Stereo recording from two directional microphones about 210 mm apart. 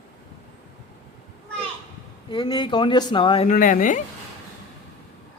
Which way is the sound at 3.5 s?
40° left (ahead or behind).